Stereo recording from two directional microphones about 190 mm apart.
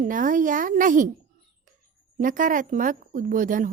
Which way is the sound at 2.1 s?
45° right (ahead or behind).